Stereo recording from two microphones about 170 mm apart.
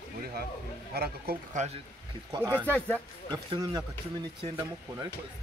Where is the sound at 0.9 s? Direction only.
65° right (ahead or behind).